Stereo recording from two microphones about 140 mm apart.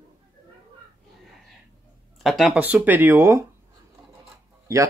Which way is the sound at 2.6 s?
15° right (ahead or behind).